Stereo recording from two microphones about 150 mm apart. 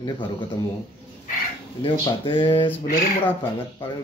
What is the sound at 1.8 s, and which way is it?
Speech, 35° left (ahead or behind).